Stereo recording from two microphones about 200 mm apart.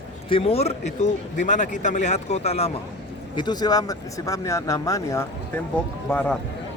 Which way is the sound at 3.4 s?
20° left (ahead or behind).